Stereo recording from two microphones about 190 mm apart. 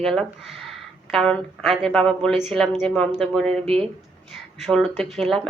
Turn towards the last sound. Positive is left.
turn(degrees=0)  # may be behind; listen again after turning